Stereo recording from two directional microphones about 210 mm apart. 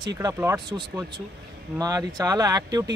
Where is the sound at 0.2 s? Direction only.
15° right (ahead or behind).